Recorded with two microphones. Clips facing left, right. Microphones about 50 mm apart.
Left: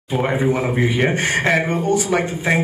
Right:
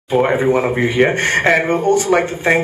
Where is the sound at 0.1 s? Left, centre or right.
Centre.